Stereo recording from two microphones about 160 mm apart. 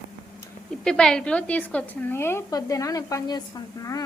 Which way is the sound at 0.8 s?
5° left (ahead or behind).